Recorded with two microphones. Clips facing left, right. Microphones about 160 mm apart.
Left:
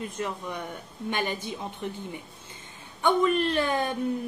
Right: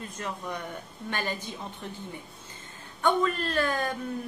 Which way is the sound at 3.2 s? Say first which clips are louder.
Left 3 dB; 20° left (ahead or behind).